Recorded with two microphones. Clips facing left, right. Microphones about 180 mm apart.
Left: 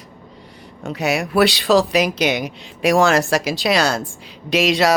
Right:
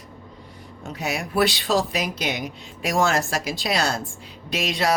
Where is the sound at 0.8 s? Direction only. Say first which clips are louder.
Left 8 dB; 75° left (ahead or behind).